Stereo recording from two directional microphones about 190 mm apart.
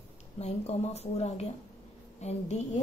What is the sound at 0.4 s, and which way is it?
A woman's voice, 35° left (ahead or behind).